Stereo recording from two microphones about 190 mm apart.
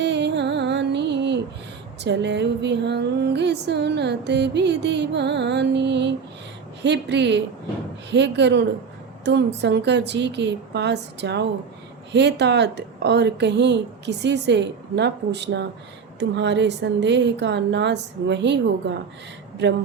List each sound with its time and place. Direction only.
0.0 s music: 65° right (ahead or behind)
16.3 s a woman's voice: 65° right (ahead or behind)